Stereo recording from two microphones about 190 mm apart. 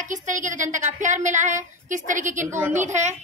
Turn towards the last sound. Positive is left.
turn(degrees=-40)  # may be behind; listen again after turning